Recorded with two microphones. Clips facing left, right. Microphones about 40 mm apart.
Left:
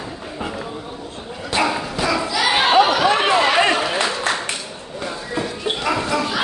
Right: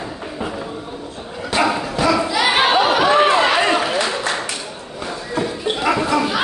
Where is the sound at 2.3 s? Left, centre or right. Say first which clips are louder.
Left 4 dB; centre.